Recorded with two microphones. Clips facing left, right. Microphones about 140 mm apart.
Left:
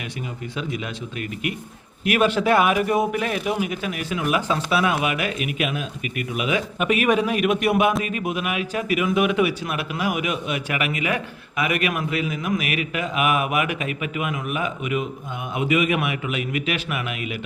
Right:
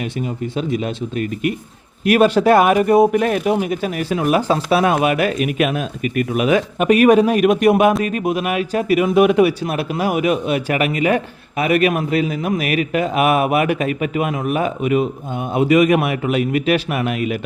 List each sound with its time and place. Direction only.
0.5 s speech: 35° right (ahead or behind)